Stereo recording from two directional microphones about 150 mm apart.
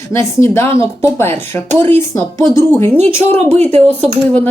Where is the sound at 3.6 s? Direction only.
45° right (ahead or behind).